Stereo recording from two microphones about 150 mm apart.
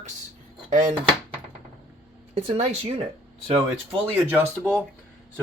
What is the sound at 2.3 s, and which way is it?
Speech, 40° right (ahead or behind).